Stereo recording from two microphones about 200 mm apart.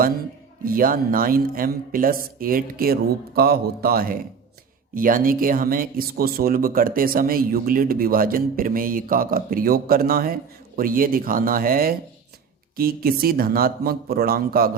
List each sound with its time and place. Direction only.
0.6 s speech: 45° right (ahead or behind)